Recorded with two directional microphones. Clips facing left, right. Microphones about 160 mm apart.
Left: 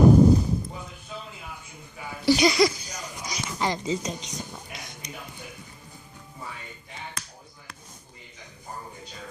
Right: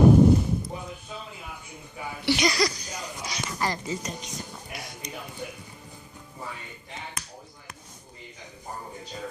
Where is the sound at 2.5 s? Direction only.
25° left (ahead or behind).